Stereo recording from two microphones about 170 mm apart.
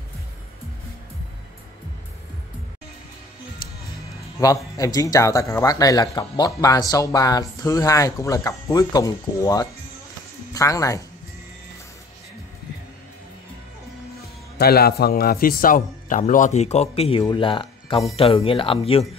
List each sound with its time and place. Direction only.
3.6 s music: 25° left (ahead or behind)
4.7 s speech: 20° left (ahead or behind)
14.6 s a man's voice: 65° left (ahead or behind); by 19.0 s 30° left (ahead or behind)